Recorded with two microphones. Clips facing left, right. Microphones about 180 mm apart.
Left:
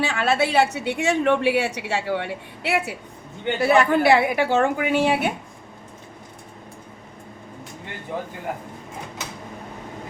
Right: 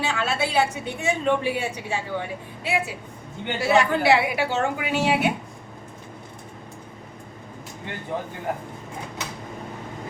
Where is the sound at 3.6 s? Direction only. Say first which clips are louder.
Left 3 dB; 55° left (ahead or behind).